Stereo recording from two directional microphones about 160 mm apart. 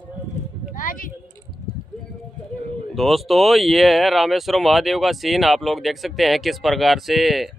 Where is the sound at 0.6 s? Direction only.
55° left (ahead or behind).